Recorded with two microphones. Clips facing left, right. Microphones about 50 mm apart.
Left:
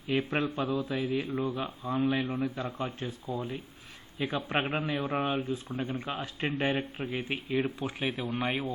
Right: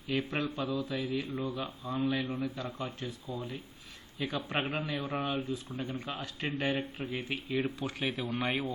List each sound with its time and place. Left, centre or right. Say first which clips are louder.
0.1 s speech: left 3 dB; left
1.5 s speech: left 3 dB; centre
1.8 s speech: left 3 dB; left; by 8.7 s centre